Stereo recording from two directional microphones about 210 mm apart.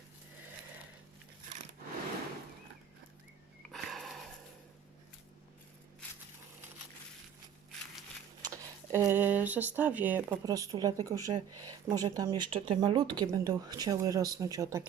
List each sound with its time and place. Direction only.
3.7 s sniff: centre (ahead or behind)
8.9 s speech: 10° right (ahead or behind)